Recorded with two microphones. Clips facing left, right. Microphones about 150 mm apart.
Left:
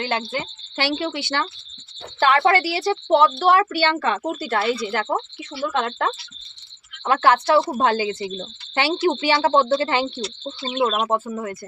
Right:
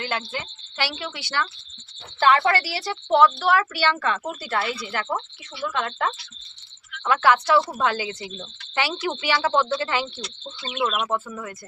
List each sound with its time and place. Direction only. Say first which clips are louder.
0.0 s a woman's voice: left 4 dB; 25° left (ahead or behind)
2.5 s a woman's voice: left 5 dB; 20° left (ahead or behind)